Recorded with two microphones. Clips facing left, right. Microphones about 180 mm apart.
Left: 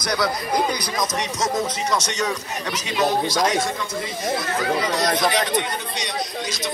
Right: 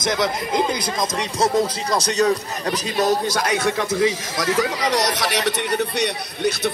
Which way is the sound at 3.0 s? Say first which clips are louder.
Even; 55° right (ahead or behind).